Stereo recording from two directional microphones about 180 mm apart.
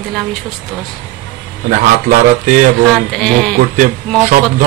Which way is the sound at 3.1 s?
5° left (ahead or behind).